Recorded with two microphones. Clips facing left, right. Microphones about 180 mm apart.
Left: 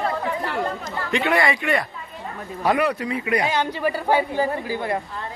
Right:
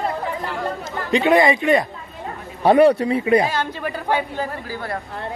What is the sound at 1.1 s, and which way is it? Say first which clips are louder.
Speech: right 6 dB; 20° right (ahead or behind).